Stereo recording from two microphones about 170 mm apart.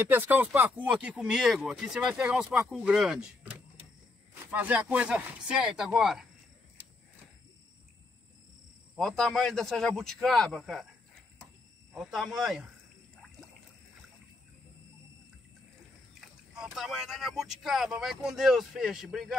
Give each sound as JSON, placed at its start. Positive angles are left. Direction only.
{"t": 0.1, "sound": "speech", "side_deg": -10}
{"t": 8.9, "sound": "speech", "side_deg": 0}
{"t": 11.9, "sound": "speech", "side_deg": 0}
{"t": 16.2, "sound": "speech", "side_deg": -5}